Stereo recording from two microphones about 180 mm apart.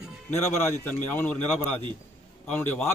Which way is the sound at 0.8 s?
10° left (ahead or behind).